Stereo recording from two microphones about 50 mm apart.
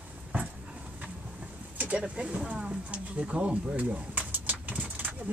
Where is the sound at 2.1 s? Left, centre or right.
Centre.